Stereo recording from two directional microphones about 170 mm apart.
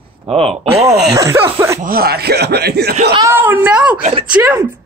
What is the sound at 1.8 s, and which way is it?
Speech, 60° right (ahead or behind).